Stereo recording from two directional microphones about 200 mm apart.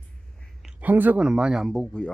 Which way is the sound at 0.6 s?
5° right (ahead or behind).